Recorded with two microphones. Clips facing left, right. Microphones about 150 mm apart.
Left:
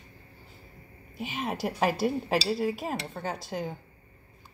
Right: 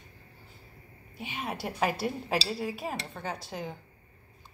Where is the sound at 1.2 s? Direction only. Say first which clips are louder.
Left 4 dB; centre (ahead or behind).